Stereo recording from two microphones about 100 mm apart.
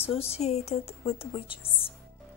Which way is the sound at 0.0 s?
80° left.